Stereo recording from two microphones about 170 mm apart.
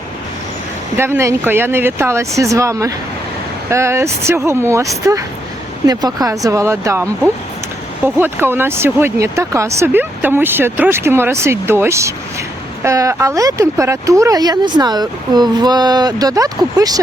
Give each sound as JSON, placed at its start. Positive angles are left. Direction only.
{"t": 0.9, "sound": "speech", "side_deg": -15}